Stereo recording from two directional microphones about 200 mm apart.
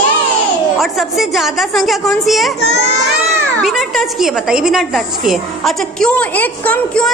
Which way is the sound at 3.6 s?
Centre (ahead or behind).